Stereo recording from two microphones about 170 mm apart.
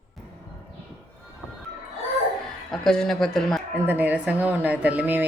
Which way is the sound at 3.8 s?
10° right (ahead or behind).